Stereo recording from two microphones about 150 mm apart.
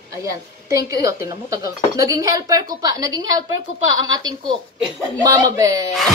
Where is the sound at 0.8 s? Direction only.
25° right (ahead or behind).